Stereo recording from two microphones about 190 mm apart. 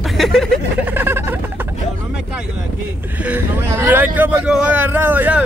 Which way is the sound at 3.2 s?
10° right (ahead or behind).